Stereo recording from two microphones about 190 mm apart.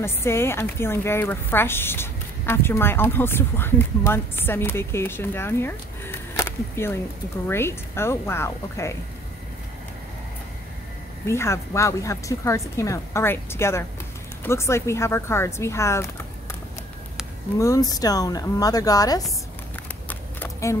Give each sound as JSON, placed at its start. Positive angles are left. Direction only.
{"t": 0.0, "sound": "a woman's voice", "side_deg": 15}
{"t": 11.2, "sound": "a woman's voice", "side_deg": 15}
{"t": 17.6, "sound": "a woman's voice", "side_deg": 20}
{"t": 20.1, "sound": "a sound", "side_deg": 10}